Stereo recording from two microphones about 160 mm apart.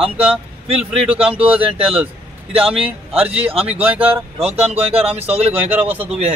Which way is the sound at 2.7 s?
35° right (ahead or behind).